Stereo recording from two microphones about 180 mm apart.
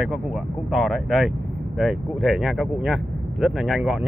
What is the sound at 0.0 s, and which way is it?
Speech, centre (ahead or behind).